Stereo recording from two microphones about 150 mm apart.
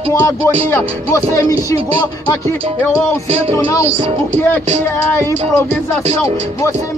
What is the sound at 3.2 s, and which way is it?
Speech, 40° right (ahead or behind).